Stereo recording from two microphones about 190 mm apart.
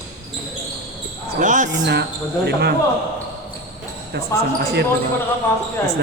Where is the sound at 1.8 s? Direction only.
60° right (ahead or behind).